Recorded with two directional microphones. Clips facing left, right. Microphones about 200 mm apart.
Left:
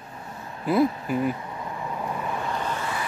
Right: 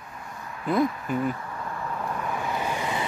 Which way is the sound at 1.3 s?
20° left (ahead or behind).